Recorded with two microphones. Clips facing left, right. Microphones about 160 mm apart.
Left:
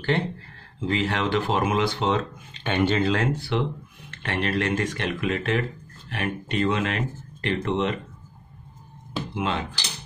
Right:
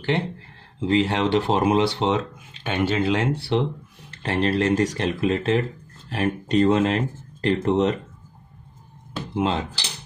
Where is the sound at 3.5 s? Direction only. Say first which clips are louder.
Right 3 dB; 30° right (ahead or behind).